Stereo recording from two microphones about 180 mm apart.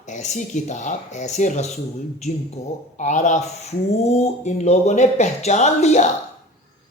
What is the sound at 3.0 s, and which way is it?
Speech, 45° left (ahead or behind).